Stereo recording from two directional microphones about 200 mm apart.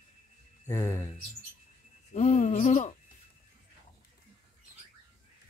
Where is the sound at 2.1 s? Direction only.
35° left (ahead or behind).